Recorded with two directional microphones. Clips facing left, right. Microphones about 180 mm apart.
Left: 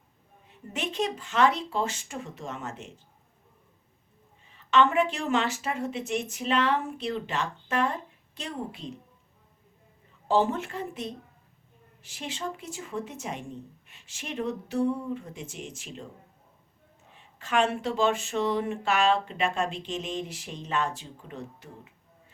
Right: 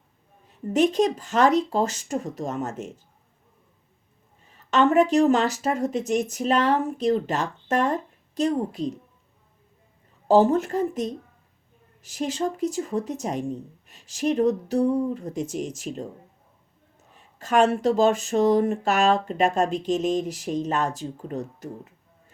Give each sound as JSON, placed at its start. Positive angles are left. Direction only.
{"t": 0.4, "sound": "speech", "side_deg": -40}
{"t": 4.4, "sound": "speech", "side_deg": -45}
{"t": 10.2, "sound": "speech", "side_deg": -40}
{"t": 17.1, "sound": "speech", "side_deg": -40}